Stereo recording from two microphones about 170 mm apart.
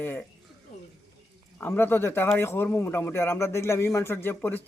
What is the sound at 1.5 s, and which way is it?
A man's voice, 10° left (ahead or behind).